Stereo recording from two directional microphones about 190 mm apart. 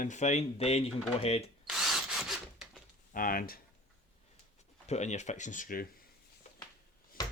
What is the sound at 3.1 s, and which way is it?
Speech, 45° left (ahead or behind).